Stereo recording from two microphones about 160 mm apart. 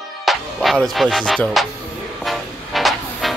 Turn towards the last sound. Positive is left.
turn(degrees=0)  # may be behind; listen again after turning